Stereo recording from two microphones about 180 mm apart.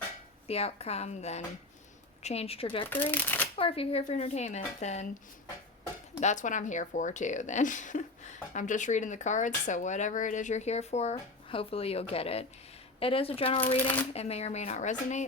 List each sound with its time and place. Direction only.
0.4 s speech: 35° left (ahead or behind)
2.9 s speech: 10° left (ahead or behind)
3.6 s speech: 30° left (ahead or behind)
6.1 s speech: 40° left (ahead or behind)